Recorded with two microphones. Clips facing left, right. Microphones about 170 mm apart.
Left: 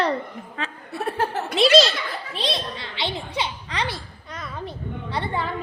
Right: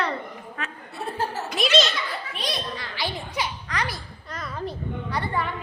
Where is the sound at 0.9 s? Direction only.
65° left (ahead or behind).